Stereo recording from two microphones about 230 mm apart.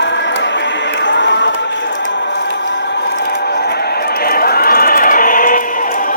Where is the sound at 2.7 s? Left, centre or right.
Left.